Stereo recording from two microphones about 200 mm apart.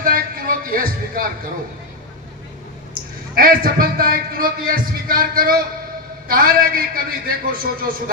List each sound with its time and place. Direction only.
0.0 s music: 45° right (ahead or behind)
3.3 s a man's voice: 45° right (ahead or behind)